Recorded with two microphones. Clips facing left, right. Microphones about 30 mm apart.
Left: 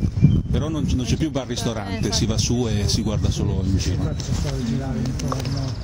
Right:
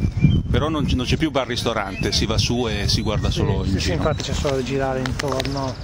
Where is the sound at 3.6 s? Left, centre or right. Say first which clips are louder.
Right 4 dB; right.